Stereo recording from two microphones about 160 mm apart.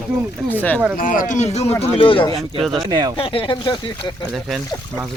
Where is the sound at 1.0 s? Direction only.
55° left (ahead or behind).